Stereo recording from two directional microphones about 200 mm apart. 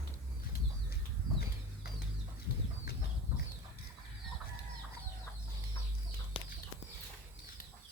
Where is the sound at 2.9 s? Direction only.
50° left (ahead or behind).